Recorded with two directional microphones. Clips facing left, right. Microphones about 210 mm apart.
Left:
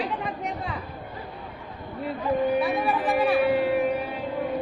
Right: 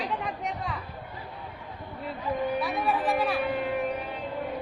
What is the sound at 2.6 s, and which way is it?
Music, 5° left (ahead or behind).